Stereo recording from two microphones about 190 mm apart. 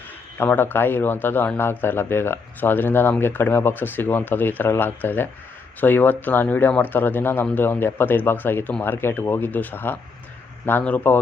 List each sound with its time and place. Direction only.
0.3 s a man's voice: 10° left (ahead or behind)